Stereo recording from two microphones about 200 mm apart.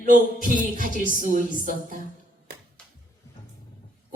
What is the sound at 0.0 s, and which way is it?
A woman's voice, 40° right (ahead or behind).